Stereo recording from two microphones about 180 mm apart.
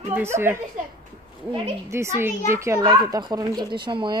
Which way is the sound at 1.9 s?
15° right (ahead or behind).